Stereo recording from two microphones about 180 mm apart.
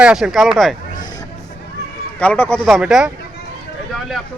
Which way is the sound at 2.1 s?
10° left (ahead or behind).